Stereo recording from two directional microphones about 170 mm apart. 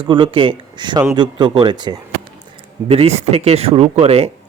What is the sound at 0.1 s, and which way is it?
Speech, 30° right (ahead or behind).